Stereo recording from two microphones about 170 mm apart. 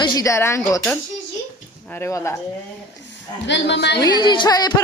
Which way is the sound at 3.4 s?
90° left.